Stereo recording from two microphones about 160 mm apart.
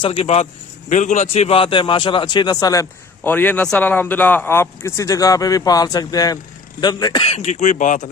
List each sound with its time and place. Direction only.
0.0 s a man's voice: 35° left (ahead or behind)
0.9 s a man's voice: 50° left (ahead or behind); by 2.8 s 25° left (ahead or behind)
3.2 s speech: 10° left (ahead or behind); by 8.1 s 50° left (ahead or behind)